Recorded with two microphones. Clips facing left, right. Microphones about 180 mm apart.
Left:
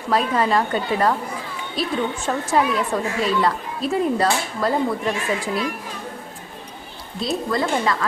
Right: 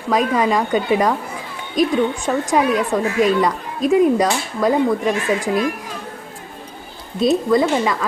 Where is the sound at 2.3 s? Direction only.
5° right (ahead or behind).